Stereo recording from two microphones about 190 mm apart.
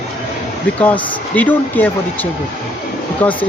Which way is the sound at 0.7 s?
10° left (ahead or behind).